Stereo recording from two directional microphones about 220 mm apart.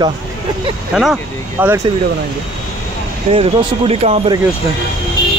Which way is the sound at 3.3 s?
25° right (ahead or behind).